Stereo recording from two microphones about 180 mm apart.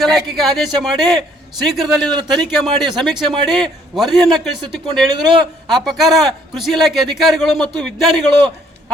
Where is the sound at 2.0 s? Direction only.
25° right (ahead or behind).